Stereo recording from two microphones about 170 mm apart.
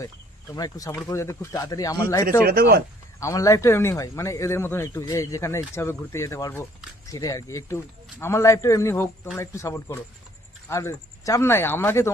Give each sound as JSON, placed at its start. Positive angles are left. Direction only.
{"t": 0.5, "sound": "a man's voice", "side_deg": 20}
{"t": 2.4, "sound": "speech", "side_deg": -60}
{"t": 3.2, "sound": "a man's voice", "side_deg": 20}